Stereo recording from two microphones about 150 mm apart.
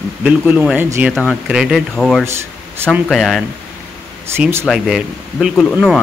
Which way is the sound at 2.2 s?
15° right (ahead or behind).